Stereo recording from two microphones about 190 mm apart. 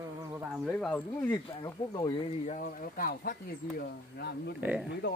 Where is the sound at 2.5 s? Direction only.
45° left (ahead or behind).